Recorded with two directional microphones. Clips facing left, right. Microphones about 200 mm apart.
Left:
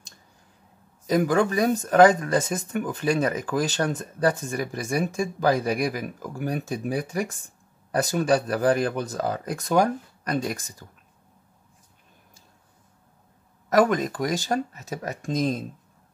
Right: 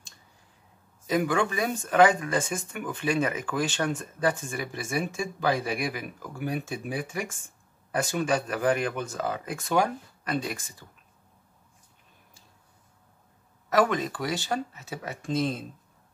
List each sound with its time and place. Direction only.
1.0 s speech: 40° left (ahead or behind)
13.7 s speech: 40° left (ahead or behind)